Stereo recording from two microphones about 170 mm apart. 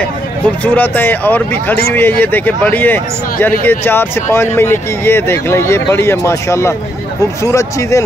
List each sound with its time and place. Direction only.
0.7 s speech: 10° left (ahead or behind)